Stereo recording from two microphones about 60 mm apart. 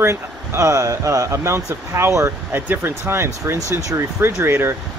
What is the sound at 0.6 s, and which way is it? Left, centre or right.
Speech, right.